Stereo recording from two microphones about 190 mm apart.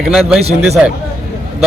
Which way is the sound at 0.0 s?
Centre (ahead or behind).